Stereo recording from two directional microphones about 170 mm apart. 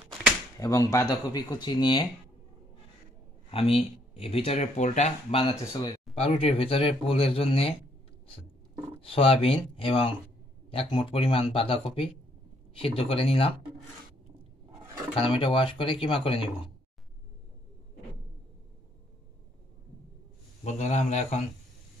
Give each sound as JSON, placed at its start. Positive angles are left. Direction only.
{"t": 0.6, "sound": "speech", "side_deg": 20}
{"t": 3.4, "sound": "speech", "side_deg": 35}
{"t": 5.4, "sound": "speech", "side_deg": 20}
{"t": 6.1, "sound": "speech", "side_deg": 35}
{"t": 9.0, "sound": "speech", "side_deg": 35}
{"t": 15.1, "sound": "speech", "side_deg": 30}
{"t": 20.6, "sound": "speech", "side_deg": 45}